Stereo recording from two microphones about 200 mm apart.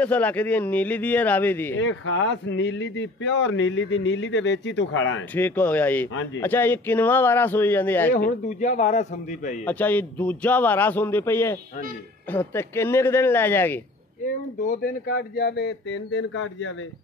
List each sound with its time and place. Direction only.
0.0 s a man's voice: 5° left (ahead or behind)
1.8 s speech: 75° left (ahead or behind)
5.3 s a man's voice: 5° left (ahead or behind)
8.3 s a man's voice: 40° left (ahead or behind)
9.7 s a man's voice: 10° left (ahead or behind)
14.2 s speech: 40° left (ahead or behind); by 16.7 s 70° left (ahead or behind)